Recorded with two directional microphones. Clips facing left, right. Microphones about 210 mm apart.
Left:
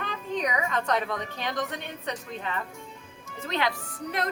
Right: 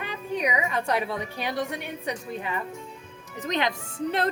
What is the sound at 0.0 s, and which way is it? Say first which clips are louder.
A woman's voice: right 1 dB; 10° right (ahead or behind).